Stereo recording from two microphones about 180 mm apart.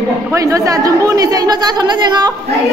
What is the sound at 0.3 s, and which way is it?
A man's voice, 20° right (ahead or behind).